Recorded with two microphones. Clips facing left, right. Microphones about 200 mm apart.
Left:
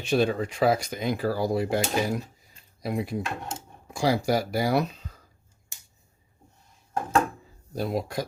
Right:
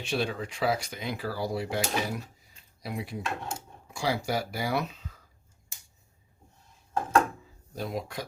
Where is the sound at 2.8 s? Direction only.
45° left (ahead or behind).